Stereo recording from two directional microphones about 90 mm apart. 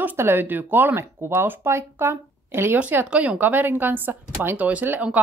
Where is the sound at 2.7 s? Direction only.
15° right (ahead or behind).